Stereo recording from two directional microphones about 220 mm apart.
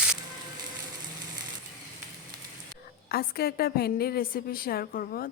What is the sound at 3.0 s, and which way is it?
A woman's voice, 45° left (ahead or behind).